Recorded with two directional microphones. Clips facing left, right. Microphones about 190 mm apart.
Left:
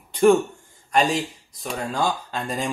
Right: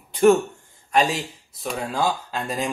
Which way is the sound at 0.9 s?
Centre (ahead or behind).